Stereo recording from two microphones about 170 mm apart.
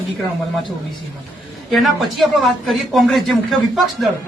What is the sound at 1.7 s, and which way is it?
A man's voice, centre (ahead or behind).